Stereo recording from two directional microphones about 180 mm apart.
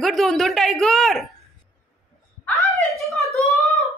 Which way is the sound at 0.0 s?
Centre (ahead or behind).